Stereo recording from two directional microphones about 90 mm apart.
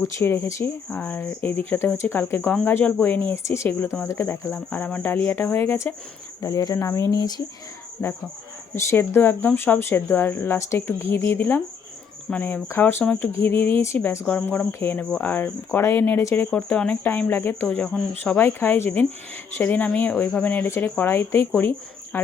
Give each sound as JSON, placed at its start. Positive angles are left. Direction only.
{"t": 0.0, "sound": "speech", "side_deg": 35}
{"t": 0.9, "sound": "speech", "side_deg": 15}
{"t": 6.4, "sound": "speech", "side_deg": 45}
{"t": 8.0, "sound": "speech", "side_deg": 25}
{"t": 10.6, "sound": "speech", "side_deg": 30}
{"t": 14.3, "sound": "speech", "side_deg": 20}
{"t": 14.7, "sound": "speech", "side_deg": 30}
{"t": 14.9, "sound": "speech", "side_deg": 20}
{"t": 17.7, "sound": "speech", "side_deg": 10}
{"t": 18.3, "sound": "speech", "side_deg": 20}
{"t": 20.7, "sound": "speech", "side_deg": 30}